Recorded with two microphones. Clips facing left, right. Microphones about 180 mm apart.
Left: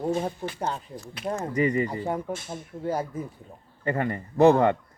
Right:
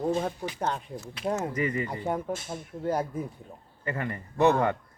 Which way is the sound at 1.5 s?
35° left (ahead or behind).